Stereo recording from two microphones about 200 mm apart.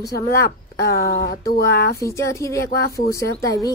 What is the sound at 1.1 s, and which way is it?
Speech, 50° left (ahead or behind).